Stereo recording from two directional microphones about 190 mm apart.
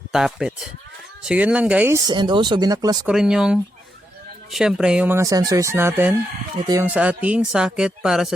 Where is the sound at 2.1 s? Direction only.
25° right (ahead or behind).